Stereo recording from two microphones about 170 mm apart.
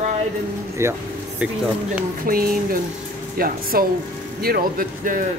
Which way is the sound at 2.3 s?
60° right (ahead or behind).